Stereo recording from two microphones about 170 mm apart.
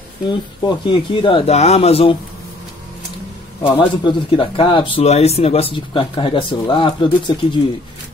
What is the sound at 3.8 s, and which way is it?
Speech, 25° left (ahead or behind).